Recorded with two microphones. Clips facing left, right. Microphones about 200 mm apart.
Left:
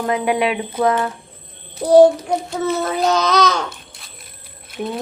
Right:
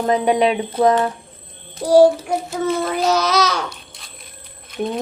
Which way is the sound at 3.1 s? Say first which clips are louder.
Left 2 dB; 10° right (ahead or behind).